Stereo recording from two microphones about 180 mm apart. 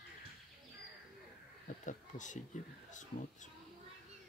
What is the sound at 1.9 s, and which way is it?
Speech, 45° left (ahead or behind).